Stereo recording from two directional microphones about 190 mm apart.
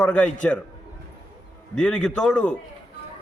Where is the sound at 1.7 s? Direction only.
5° left (ahead or behind).